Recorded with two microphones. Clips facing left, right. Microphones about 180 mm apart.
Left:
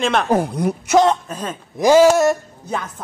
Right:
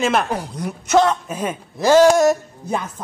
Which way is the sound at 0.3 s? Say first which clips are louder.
Left 8 dB; 55° left (ahead or behind).